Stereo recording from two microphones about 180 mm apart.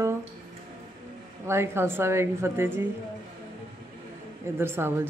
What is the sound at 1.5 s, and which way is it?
Speech, 15° right (ahead or behind).